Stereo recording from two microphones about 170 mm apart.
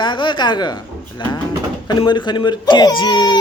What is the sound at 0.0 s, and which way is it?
Speech, 30° left (ahead or behind).